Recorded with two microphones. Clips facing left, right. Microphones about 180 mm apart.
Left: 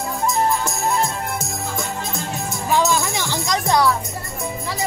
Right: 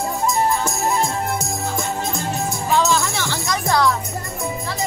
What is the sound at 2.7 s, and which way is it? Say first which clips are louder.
Music: even; 15° left (ahead or behind).